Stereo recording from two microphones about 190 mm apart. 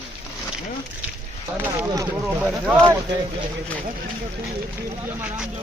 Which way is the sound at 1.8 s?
15° right (ahead or behind).